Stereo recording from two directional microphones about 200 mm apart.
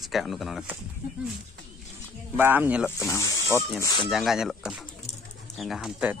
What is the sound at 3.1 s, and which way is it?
Speech, 15° left (ahead or behind).